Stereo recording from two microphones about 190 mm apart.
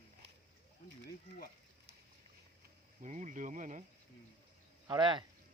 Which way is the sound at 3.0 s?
40° right (ahead or behind).